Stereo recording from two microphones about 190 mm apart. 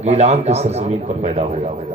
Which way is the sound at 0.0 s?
35° right (ahead or behind).